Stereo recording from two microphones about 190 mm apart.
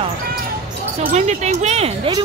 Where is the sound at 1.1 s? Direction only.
35° right (ahead or behind).